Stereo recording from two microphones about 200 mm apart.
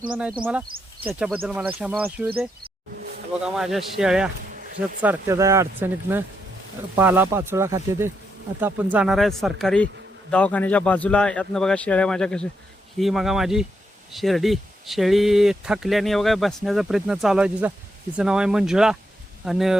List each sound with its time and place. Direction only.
0.1 s speech: 5° right (ahead or behind)
2.6 s insect: 50° right (ahead or behind)
3.4 s speech: centre (ahead or behind)
5.0 s speech: 15° right (ahead or behind)